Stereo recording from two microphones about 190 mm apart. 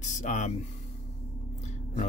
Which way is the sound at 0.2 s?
40° left (ahead or behind).